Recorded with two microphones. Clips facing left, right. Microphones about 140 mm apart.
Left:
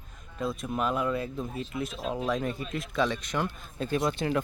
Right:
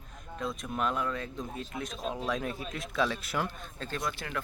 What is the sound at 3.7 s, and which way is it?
Speech, 15° left (ahead or behind).